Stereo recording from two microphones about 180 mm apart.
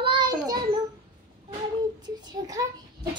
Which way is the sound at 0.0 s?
25° right (ahead or behind).